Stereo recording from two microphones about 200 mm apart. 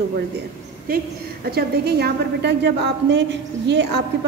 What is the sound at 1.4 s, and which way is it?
A woman's voice, 50° right (ahead or behind).